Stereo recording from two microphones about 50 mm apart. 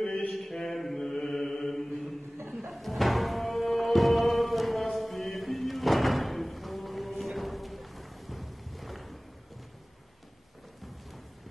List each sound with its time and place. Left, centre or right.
0.0 s a sound: centre
0.4 s mantra: centre
2.7 s music: centre